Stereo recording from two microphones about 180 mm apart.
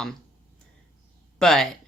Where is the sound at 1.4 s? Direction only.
Centre (ahead or behind).